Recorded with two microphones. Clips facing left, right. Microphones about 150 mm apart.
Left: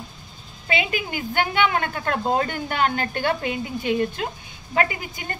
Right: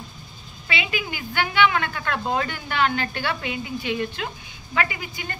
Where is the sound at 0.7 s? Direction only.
45° left (ahead or behind).